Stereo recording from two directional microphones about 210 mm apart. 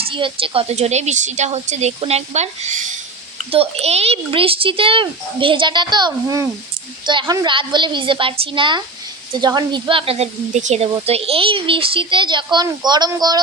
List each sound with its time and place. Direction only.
0.0 s a woman's voice: 25° right (ahead or behind)